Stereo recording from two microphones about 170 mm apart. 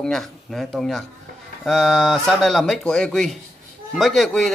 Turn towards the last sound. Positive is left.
turn(degrees=0)  # may be behind; listen again after turning